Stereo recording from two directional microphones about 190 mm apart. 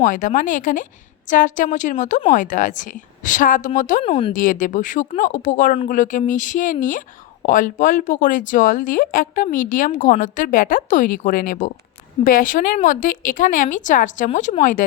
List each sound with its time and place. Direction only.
0.0 s speech: 45° left (ahead or behind)
4.0 s speech: 30° left (ahead or behind)
4.3 s speech: 45° left (ahead or behind)